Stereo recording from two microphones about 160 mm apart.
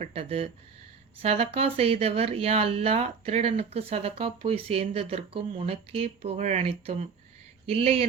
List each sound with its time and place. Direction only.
0.0 s speech: 35° right (ahead or behind)